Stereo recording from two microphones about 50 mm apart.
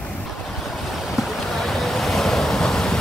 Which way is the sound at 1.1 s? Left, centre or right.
Centre.